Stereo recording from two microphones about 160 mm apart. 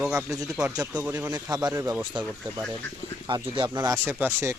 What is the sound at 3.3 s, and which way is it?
Speech, 25° right (ahead or behind).